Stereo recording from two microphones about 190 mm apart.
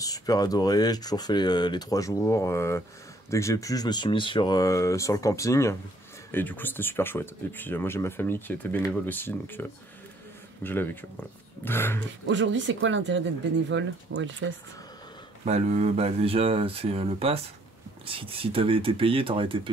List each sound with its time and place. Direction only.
0.0 s speech: 20° left (ahead or behind)
12.3 s speech: 75° right (ahead or behind)
15.4 s speech: 35° right (ahead or behind)